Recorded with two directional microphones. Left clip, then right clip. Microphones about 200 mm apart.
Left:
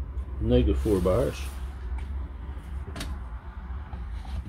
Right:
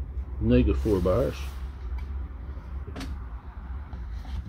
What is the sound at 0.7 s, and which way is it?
Speech, 5° right (ahead or behind).